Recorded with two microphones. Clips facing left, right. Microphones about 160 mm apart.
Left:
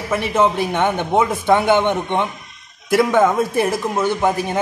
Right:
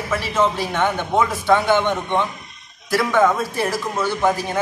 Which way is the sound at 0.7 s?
20° left (ahead or behind).